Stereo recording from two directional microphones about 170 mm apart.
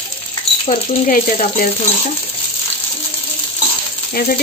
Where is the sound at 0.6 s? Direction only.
45° left (ahead or behind).